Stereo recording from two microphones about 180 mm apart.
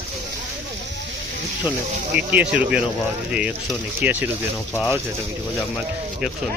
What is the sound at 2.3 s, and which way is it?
Speech, 10° right (ahead or behind).